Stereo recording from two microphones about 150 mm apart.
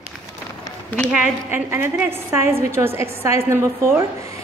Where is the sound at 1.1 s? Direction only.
10° right (ahead or behind).